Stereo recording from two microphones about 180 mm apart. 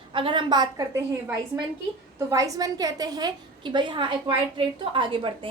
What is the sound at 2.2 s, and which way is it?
A woman's voice, 15° right (ahead or behind).